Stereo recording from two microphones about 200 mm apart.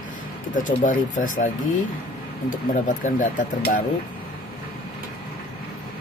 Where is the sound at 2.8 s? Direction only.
40° left (ahead or behind).